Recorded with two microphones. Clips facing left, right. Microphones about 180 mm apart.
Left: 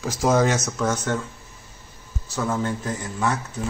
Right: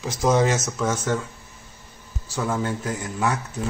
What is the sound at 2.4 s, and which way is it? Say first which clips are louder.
Speech: even; 5° right (ahead or behind).